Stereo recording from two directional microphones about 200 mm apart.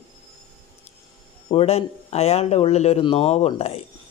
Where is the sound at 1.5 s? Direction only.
30° left (ahead or behind).